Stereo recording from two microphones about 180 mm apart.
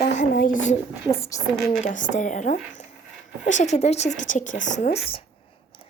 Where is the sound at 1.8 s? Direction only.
45° left (ahead or behind).